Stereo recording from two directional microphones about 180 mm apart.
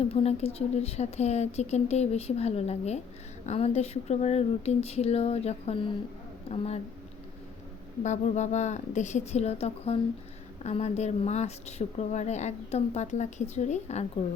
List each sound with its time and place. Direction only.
0.1 s speech: 35° left (ahead or behind)
8.0 s speech: 40° left (ahead or behind)